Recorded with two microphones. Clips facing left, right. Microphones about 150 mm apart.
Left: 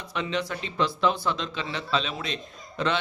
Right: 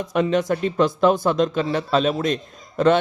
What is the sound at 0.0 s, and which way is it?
Speech, 50° right (ahead or behind).